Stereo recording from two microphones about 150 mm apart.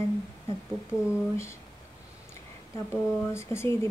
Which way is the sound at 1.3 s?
20° left (ahead or behind).